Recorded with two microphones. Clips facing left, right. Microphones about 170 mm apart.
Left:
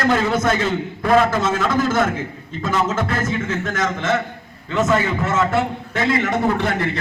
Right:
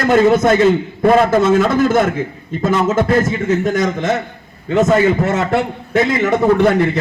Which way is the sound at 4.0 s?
40° right (ahead or behind).